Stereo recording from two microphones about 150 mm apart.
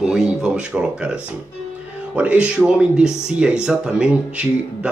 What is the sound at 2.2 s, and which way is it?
Speech, 10° right (ahead or behind).